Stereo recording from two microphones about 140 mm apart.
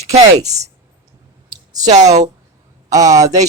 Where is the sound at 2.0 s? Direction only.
25° right (ahead or behind).